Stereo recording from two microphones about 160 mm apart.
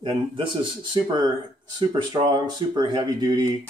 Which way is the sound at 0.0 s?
30° right (ahead or behind).